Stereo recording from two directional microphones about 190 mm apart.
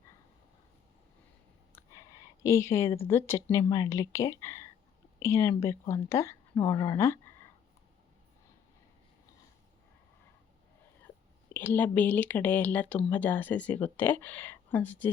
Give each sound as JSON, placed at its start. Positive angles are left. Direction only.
{"t": 1.7, "sound": "speech", "side_deg": 15}
{"t": 11.5, "sound": "speech", "side_deg": 10}